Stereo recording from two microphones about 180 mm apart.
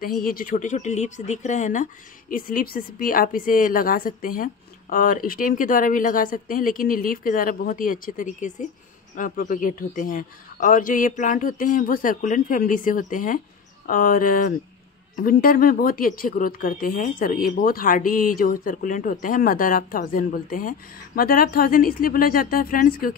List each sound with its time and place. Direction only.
0.0 s speech: 55° left (ahead or behind)